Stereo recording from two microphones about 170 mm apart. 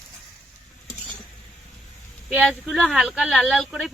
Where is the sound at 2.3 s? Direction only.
5° right (ahead or behind).